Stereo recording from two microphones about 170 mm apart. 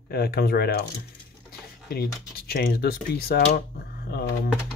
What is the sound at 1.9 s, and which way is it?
Speech, 65° left (ahead or behind).